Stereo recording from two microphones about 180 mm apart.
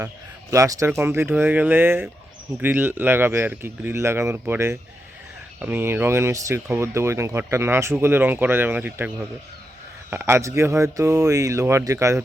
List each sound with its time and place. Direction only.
0.5 s speech: 15° right (ahead or behind)